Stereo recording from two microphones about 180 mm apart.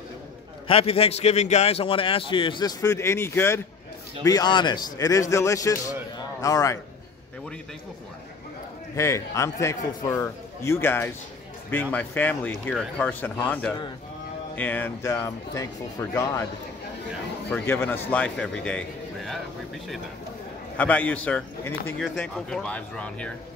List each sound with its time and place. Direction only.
0.7 s a man's voice: 30° left (ahead or behind)
8.9 s speech: 15° left (ahead or behind)
17.5 s speech: 10° left (ahead or behind)
20.7 s speech: 10° left (ahead or behind)